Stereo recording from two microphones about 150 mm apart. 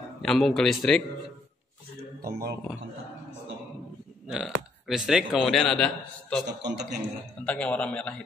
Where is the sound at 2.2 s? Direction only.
90° right.